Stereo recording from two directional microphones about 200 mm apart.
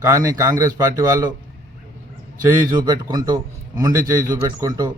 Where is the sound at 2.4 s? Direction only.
20° right (ahead or behind).